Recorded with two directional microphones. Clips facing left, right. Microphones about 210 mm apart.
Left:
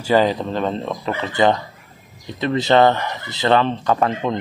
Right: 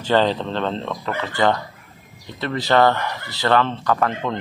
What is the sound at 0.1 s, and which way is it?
Speech, 10° left (ahead or behind).